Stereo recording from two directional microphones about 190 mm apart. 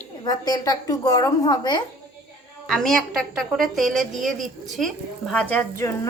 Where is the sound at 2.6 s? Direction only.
5° left (ahead or behind).